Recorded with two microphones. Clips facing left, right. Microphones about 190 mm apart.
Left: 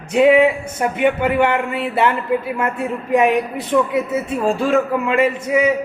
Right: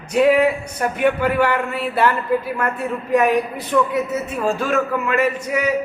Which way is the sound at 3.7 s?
15° left (ahead or behind).